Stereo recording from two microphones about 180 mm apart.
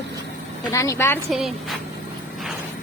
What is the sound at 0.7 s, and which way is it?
Speech, 15° left (ahead or behind).